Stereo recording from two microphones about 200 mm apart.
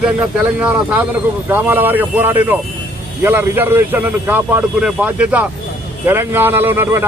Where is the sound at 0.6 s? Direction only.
5° right (ahead or behind).